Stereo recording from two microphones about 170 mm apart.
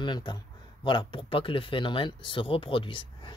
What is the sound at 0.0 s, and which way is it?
Speech, 25° left (ahead or behind).